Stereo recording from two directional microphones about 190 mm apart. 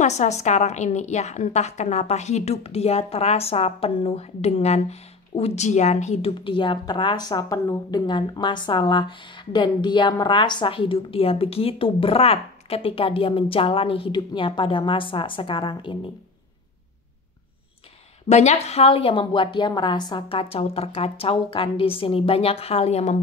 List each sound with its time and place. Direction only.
0.0 s a woman's voice: 35° left (ahead or behind)
18.3 s a woman's voice: 35° left (ahead or behind)